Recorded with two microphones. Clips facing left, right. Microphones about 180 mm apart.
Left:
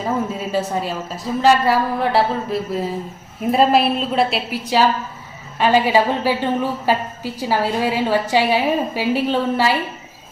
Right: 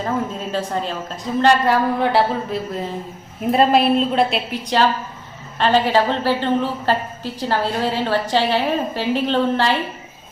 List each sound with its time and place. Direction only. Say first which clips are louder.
0.0 s a woman's voice: left 1 dB; 10° left (ahead or behind)